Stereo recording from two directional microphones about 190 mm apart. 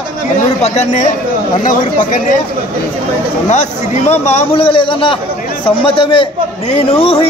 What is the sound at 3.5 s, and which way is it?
A man's voice, 35° left (ahead or behind).